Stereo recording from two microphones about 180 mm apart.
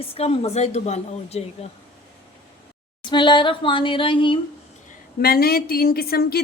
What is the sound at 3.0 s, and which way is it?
Speech, 25° left (ahead or behind).